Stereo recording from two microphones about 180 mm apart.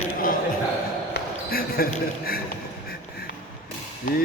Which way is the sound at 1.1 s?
60° left (ahead or behind).